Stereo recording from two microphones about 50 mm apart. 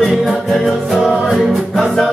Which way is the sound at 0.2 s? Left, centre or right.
Centre.